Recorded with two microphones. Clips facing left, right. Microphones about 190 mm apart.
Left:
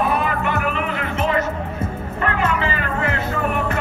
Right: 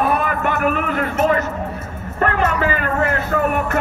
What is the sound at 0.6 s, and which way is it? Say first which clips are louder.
Music: right 4 dB; 45° right (ahead or behind).